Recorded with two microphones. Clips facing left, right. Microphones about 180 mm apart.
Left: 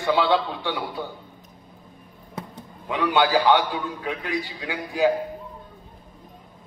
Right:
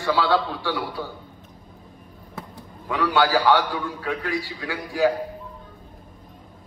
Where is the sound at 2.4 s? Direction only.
20° left (ahead or behind).